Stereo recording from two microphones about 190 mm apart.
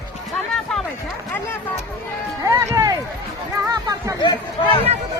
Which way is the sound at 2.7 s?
20° right (ahead or behind).